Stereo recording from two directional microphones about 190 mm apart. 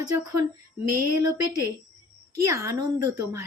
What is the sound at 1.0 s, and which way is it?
Speech, 15° right (ahead or behind).